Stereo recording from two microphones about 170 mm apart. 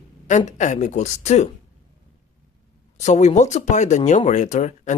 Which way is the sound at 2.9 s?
45° left (ahead or behind).